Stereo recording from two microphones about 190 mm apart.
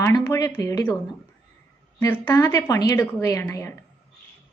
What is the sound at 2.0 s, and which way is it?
A woman's voice, 10° left (ahead or behind).